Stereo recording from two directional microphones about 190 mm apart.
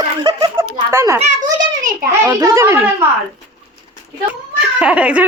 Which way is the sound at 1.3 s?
40° right (ahead or behind).